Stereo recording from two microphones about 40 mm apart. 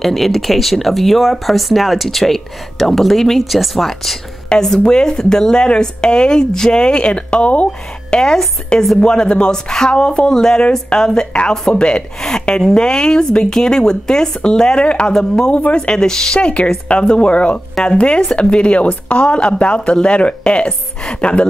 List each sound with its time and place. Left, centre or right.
0.0 s speech: centre
4.7 s speech: centre
8.1 s speech: centre
10.3 s speech: centre
16.0 s speech: centre
16.3 s speech: left